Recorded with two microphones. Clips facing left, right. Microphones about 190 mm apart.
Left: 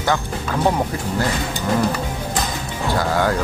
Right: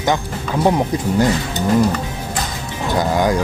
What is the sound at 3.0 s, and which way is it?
Speech, 15° right (ahead or behind).